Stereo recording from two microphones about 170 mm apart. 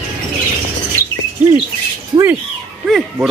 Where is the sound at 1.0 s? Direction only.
15° right (ahead or behind).